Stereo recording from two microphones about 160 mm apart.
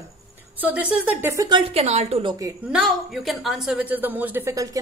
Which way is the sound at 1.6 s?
40° right (ahead or behind).